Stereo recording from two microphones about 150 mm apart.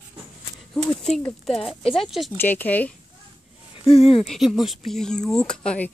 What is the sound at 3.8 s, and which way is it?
Speech, 40° left (ahead or behind).